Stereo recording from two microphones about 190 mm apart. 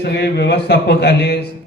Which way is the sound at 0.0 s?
60° left (ahead or behind).